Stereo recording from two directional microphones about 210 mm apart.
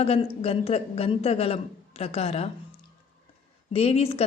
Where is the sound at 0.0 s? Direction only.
25° left (ahead or behind).